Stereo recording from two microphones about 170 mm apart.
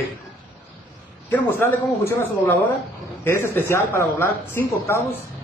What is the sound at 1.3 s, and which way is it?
A man's voice, 10° left (ahead or behind).